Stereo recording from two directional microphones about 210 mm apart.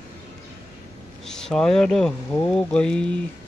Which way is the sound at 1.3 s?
Centre (ahead or behind).